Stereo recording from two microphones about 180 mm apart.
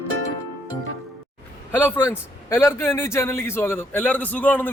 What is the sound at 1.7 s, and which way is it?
A man's voice, 10° left (ahead or behind).